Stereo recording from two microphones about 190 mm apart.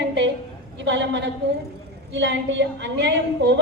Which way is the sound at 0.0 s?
65° right (ahead or behind).